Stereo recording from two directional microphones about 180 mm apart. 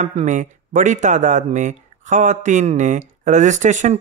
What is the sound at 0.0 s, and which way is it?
Speech, 40° right (ahead or behind).